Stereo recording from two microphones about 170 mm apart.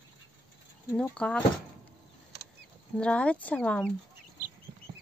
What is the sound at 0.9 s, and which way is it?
Speech, 5° left (ahead or behind).